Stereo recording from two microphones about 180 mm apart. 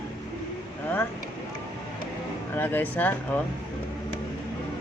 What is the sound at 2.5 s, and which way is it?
Speech, 10° left (ahead or behind).